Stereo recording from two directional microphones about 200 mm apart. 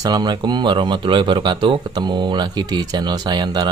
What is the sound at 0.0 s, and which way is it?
Speech, 20° right (ahead or behind).